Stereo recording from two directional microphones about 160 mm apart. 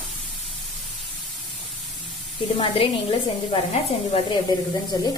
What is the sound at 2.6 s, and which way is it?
A woman's voice, 35° left (ahead or behind).